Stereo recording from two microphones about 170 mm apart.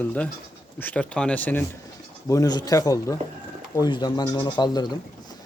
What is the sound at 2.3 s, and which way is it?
Speech, 20° left (ahead or behind).